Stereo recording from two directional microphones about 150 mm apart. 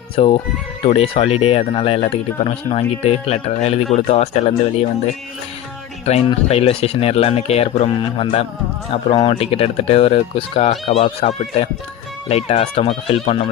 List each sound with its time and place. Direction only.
0.2 s speech: 40° left (ahead or behind)
6.1 s speech: 45° left (ahead or behind)
9.1 s speech: 30° left (ahead or behind)
9.4 s speech: 40° left (ahead or behind)